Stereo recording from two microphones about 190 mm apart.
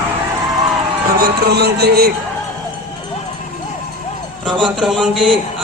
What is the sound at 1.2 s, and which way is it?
Speech, 60° right (ahead or behind).